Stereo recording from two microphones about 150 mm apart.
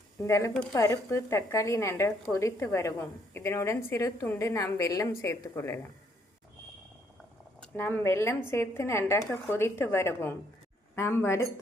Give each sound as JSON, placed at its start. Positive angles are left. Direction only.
{"t": 0.2, "sound": "a woman's voice", "side_deg": 20}
{"t": 7.6, "sound": "speech", "side_deg": 15}